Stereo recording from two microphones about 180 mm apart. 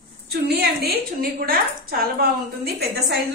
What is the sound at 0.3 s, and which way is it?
A woman's voice, 60° right (ahead or behind).